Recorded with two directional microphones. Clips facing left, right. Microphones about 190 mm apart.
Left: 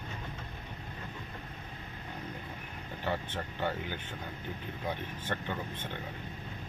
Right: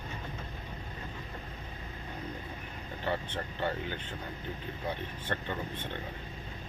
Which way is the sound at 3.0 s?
10° left (ahead or behind).